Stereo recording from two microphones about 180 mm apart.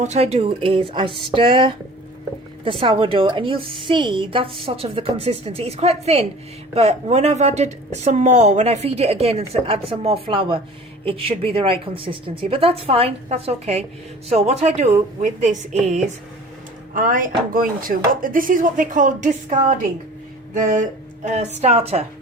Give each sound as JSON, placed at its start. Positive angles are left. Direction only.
{"t": 0.0, "sound": "a woman's voice", "side_deg": -40}